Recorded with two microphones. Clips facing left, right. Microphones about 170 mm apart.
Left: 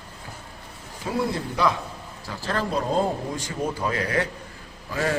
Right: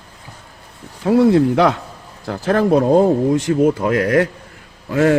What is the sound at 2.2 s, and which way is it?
Speech, 65° right (ahead or behind).